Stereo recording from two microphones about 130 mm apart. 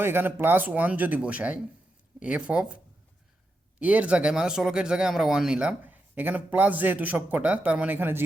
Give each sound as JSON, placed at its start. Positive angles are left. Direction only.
{"t": 0.0, "sound": "speech", "side_deg": -15}